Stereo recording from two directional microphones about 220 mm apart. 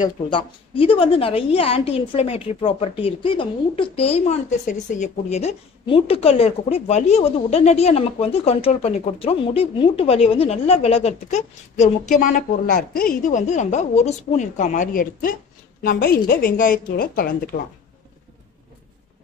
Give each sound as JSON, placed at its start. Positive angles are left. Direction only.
{"t": 0.3, "sound": "a woman's voice", "side_deg": 25}